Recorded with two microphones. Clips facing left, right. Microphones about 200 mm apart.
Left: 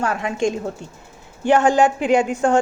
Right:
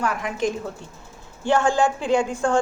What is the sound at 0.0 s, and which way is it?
A woman's voice, 25° left (ahead or behind).